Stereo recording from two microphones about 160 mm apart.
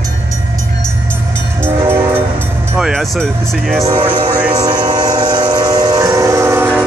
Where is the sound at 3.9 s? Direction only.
35° right (ahead or behind).